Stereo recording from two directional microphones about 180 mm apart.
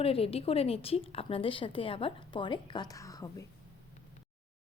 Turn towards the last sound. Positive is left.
turn(degrees=20)  # may be behind; listen again after turning